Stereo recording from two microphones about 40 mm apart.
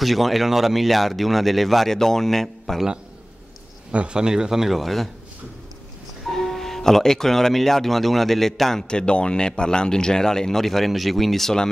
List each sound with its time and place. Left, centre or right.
0.0 s speech: centre
3.9 s speech: right
4.2 s speech: centre
6.2 s speech: centre
8.8 s speech: left; by 11.5 s centre